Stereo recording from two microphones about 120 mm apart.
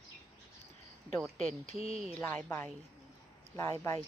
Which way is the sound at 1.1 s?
5° left (ahead or behind).